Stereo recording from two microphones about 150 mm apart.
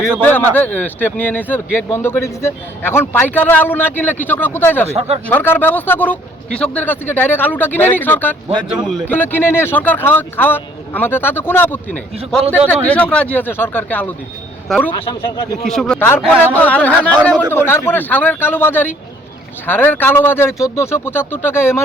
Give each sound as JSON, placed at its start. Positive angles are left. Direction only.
{"t": 0.2, "sound": "a man's voice", "side_deg": 10}
{"t": 4.9, "sound": "speech", "side_deg": -45}
{"t": 5.3, "sound": "a man's voice", "side_deg": 15}
{"t": 8.7, "sound": "speech", "side_deg": -5}
{"t": 9.0, "sound": "a man's voice", "side_deg": 15}